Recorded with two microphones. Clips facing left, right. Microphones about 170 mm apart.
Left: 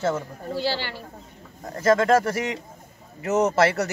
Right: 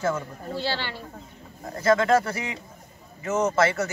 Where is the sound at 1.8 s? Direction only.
45° left (ahead or behind).